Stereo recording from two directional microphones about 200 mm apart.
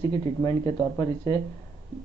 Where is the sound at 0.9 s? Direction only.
20° left (ahead or behind).